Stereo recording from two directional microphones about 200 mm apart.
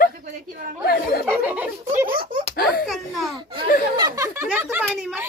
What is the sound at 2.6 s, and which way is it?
Baby laughter, 50° left (ahead or behind).